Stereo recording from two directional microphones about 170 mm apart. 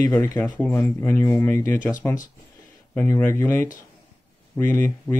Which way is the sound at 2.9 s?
10° left (ahead or behind).